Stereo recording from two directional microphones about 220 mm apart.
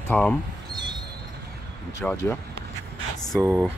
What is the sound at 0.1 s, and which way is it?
Speech, 5° left (ahead or behind).